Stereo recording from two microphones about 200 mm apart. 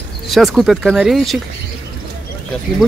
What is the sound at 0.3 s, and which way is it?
Speech, centre (ahead or behind).